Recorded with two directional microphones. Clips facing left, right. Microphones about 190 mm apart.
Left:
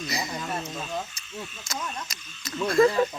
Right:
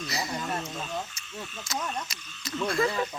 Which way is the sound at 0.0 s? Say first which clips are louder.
Left 1 dB; 15° left (ahead or behind).